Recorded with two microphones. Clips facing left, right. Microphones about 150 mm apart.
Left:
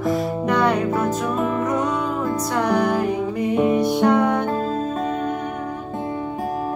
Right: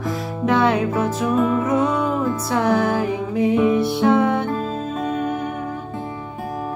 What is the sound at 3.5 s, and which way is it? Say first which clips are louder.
Music: even; 45° left (ahead or behind).